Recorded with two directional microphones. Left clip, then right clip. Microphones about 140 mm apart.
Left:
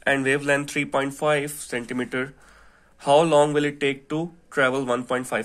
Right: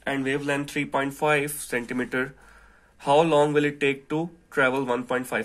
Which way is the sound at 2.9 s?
25° left (ahead or behind).